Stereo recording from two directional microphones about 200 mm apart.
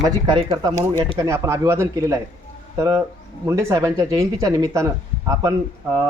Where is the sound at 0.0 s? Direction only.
20° right (ahead or behind).